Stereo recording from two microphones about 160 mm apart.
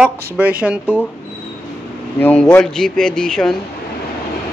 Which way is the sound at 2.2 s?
10° left (ahead or behind).